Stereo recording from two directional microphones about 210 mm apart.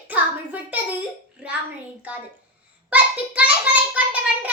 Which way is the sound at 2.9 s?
5° right (ahead or behind).